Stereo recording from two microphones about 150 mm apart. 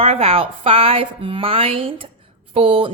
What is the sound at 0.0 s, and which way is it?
A woman's voice, 40° right (ahead or behind).